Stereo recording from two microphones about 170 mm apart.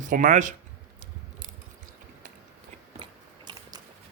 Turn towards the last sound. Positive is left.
turn(degrees=-25)  # may be behind; listen again after turning